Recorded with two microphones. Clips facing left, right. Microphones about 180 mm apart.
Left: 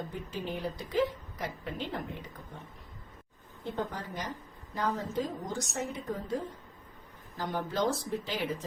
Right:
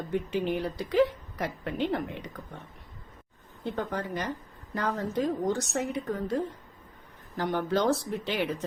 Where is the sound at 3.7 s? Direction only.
65° right (ahead or behind).